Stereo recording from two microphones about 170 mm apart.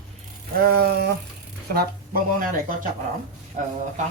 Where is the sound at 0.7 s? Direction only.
65° right (ahead or behind).